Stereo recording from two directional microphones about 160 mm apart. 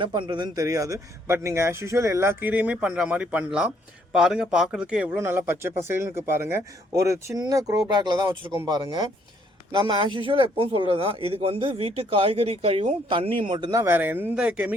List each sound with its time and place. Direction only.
0.0 s speech: 30° right (ahead or behind); by 14.8 s 5° right (ahead or behind)